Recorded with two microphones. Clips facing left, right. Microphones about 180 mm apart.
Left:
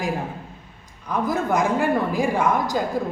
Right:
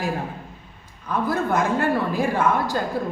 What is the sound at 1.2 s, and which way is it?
A woman's voice, 15° left (ahead or behind).